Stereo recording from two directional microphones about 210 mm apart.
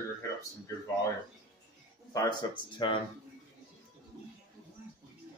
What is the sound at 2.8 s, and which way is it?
Speech, 20° left (ahead or behind).